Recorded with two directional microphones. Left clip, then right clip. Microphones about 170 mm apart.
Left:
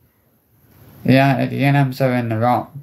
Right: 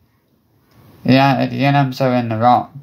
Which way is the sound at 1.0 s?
15° left (ahead or behind).